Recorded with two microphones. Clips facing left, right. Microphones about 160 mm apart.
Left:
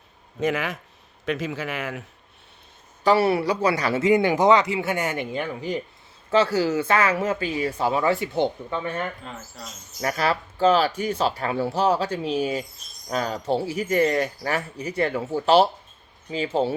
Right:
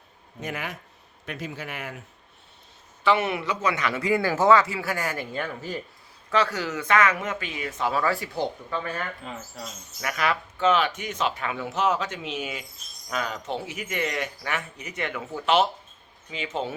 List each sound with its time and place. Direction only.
0.3 s speech: 90° left
3.0 s a man's voice: 35° left (ahead or behind); by 5.8 s 15° left (ahead or behind)
6.3 s a man's voice: 30° left (ahead or behind)